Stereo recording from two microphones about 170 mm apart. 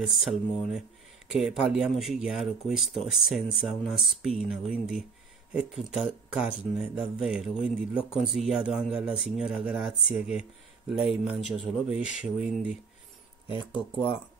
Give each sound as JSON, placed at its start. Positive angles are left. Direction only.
{"t": 0.0, "sound": "speech", "side_deg": 0}
{"t": 13.5, "sound": "speech", "side_deg": 30}